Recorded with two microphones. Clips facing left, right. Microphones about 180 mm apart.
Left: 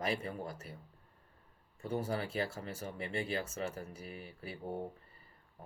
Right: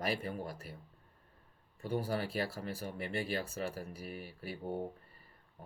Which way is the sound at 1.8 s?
35° right (ahead or behind).